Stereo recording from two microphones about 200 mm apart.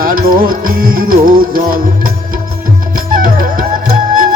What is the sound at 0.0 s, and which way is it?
Music, 45° right (ahead or behind).